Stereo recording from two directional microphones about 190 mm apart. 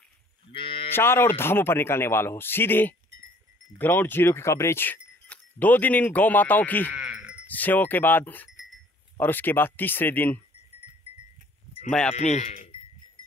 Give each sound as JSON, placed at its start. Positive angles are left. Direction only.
{"t": 0.5, "sound": "cattle", "side_deg": 30}
{"t": 0.8, "sound": "speech", "side_deg": 10}
{"t": 6.9, "sound": "sheep", "side_deg": -5}
{"t": 7.4, "sound": "speech", "side_deg": 10}
{"t": 12.1, "sound": "speech", "side_deg": 35}